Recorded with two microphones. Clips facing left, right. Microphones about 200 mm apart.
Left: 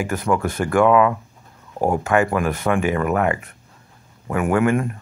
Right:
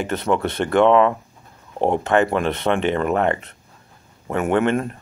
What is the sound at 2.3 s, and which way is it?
Speech, 25° right (ahead or behind).